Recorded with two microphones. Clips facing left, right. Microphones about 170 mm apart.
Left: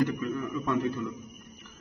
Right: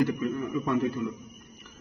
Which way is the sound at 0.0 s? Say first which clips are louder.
Right 2 dB; 10° right (ahead or behind).